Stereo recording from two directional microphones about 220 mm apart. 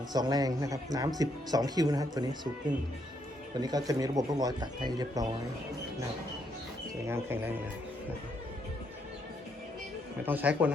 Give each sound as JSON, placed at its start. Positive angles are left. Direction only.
{"t": 0.1, "sound": "speech", "side_deg": -20}
{"t": 3.6, "sound": "speech", "side_deg": -15}
{"t": 7.1, "sound": "speech", "side_deg": -10}
{"t": 10.2, "sound": "speech", "side_deg": -5}